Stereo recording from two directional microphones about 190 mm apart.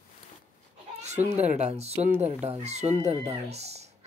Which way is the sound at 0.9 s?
35° right (ahead or behind).